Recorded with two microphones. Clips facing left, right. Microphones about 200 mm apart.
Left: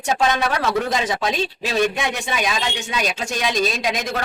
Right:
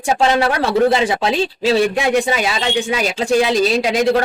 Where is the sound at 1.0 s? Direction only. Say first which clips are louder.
Right 5 dB; 30° right (ahead or behind).